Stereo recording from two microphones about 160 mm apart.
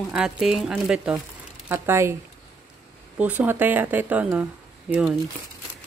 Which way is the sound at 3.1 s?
10° right (ahead or behind).